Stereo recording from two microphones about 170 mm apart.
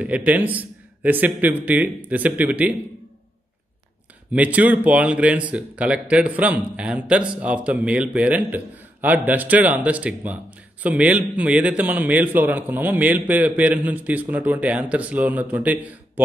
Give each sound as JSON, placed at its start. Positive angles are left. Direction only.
{"t": 0.0, "sound": "a man's voice", "side_deg": -10}
{"t": 4.3, "sound": "speech", "side_deg": -10}